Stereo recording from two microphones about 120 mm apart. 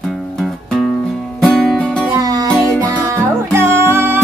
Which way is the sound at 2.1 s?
30° right (ahead or behind).